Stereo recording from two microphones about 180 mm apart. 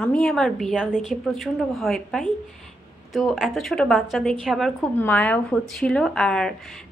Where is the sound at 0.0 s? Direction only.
5° left (ahead or behind).